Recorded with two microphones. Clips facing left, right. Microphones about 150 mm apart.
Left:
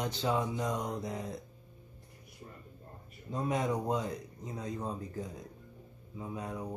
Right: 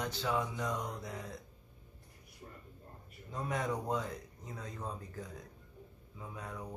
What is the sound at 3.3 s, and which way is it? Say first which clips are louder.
Speech: left 4 dB; 20° left (ahead or behind).